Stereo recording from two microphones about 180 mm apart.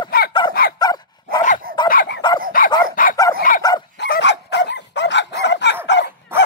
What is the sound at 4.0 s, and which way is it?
Bow-wow, 70° left (ahead or behind).